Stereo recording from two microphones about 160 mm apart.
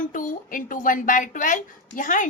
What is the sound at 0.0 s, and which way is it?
A woman's voice, 55° left (ahead or behind).